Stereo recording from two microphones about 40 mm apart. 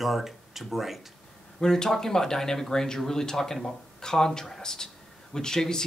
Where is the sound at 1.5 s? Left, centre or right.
Centre.